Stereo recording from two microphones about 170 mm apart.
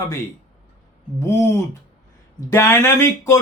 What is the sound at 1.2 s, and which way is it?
Speech, 15° left (ahead or behind).